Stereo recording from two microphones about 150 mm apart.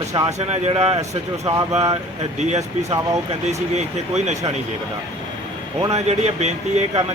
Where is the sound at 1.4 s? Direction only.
25° right (ahead or behind).